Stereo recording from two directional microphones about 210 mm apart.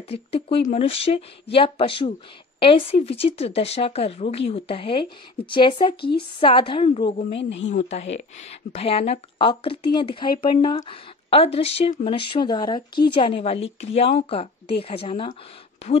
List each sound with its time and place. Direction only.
0.1 s a woman's voice: 30° left (ahead or behind)
5.9 s a woman's voice: 50° left (ahead or behind)
6.4 s a woman's voice: 25° left (ahead or behind)
7.3 s a woman's voice: 60° left (ahead or behind)
7.7 s a woman's voice: 30° left (ahead or behind)